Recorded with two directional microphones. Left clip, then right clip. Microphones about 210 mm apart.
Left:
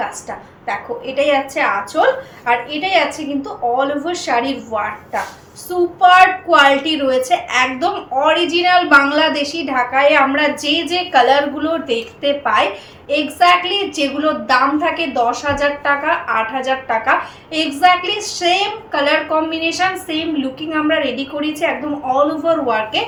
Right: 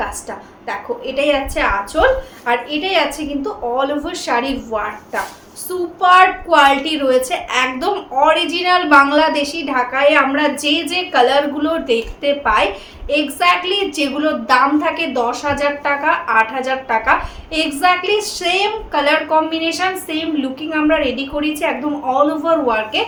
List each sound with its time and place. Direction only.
0.7 s a woman's voice: 20° right (ahead or behind)
6.0 s a woman's voice: 25° right (ahead or behind)